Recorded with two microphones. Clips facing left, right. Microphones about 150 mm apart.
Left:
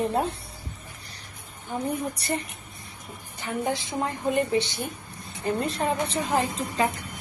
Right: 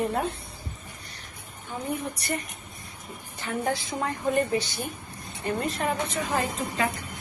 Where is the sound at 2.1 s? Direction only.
30° left (ahead or behind).